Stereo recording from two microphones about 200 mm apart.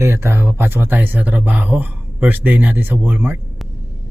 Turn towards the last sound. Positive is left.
turn(degrees=-10)  # may be behind; listen again after turning